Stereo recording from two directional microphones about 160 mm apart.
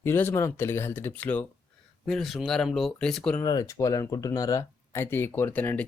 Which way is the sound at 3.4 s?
20° left (ahead or behind).